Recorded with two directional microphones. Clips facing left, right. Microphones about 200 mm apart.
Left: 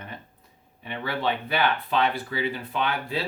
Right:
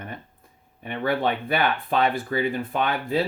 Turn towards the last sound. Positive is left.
turn(degrees=-50)  # may be behind; listen again after turning